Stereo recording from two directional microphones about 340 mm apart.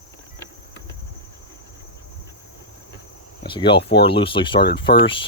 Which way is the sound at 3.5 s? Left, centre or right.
Centre.